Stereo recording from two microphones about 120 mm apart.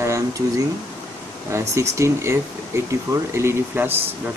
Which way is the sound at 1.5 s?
25° right (ahead or behind).